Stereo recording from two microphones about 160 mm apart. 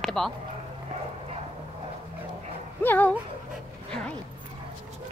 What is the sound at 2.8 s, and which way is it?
Speech, 10° left (ahead or behind).